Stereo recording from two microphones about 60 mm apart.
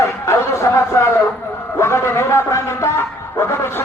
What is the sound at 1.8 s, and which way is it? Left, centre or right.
Music, left.